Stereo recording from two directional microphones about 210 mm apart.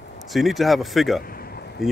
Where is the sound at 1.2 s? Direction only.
45° left (ahead or behind).